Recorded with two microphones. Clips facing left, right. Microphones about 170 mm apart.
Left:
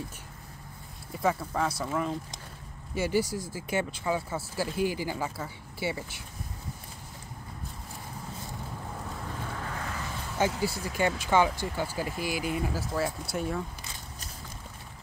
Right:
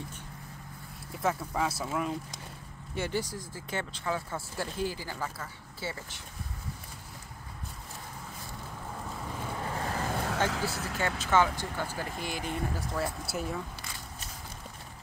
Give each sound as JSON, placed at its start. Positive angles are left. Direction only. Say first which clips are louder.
{"t": 1.2, "sound": "speech", "louder": "left 2 dB", "side_deg": 0}
{"t": 2.9, "sound": "speech", "louder": "left 5 dB", "side_deg": 5}
{"t": 9.6, "sound": "vehicle", "louder": "right 2 dB", "side_deg": -25}
{"t": 9.9, "sound": "vehicle", "louder": "right 5 dB", "side_deg": -45}
{"t": 10.6, "sound": "speech", "louder": "left 4 dB", "side_deg": 15}